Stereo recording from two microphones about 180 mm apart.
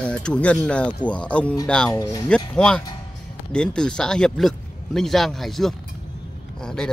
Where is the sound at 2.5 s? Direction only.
5° left (ahead or behind).